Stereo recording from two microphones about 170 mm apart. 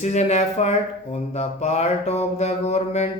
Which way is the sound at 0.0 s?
40° left (ahead or behind).